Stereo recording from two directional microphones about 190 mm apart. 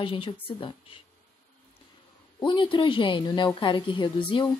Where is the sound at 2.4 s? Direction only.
25° left (ahead or behind).